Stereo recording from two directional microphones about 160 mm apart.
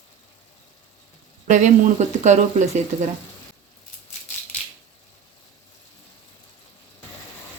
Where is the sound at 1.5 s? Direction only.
50° right (ahead or behind).